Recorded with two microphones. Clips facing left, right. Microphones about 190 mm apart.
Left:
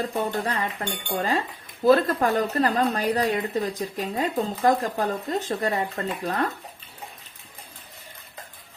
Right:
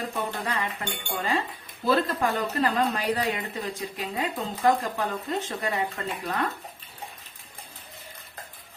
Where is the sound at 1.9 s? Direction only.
45° left (ahead or behind).